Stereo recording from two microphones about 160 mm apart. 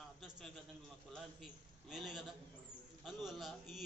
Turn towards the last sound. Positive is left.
turn(degrees=0)  # may be behind; listen again after turning